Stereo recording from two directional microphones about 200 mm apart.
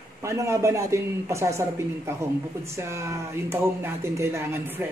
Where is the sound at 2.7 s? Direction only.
15° right (ahead or behind).